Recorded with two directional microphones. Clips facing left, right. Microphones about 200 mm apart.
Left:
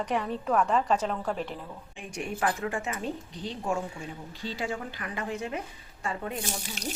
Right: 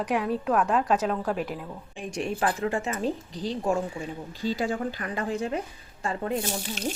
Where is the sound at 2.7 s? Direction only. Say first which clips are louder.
Right 5 dB; 40° right (ahead or behind).